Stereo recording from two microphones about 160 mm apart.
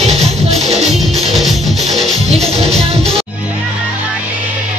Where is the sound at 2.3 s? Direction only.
40° right (ahead or behind).